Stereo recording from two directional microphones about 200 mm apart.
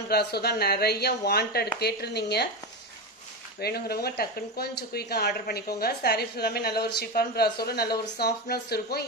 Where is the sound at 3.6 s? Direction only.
50° left (ahead or behind).